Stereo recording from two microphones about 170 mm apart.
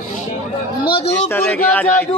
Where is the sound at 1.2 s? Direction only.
10° left (ahead or behind).